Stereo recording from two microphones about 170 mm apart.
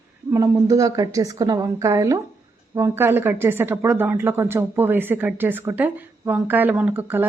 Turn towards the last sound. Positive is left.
turn(degrees=-10)  # may be behind; listen again after turning